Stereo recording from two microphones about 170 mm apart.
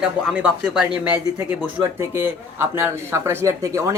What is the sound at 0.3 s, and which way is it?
Speech, 5° right (ahead or behind).